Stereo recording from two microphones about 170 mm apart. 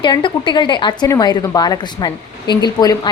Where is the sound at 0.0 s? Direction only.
25° left (ahead or behind).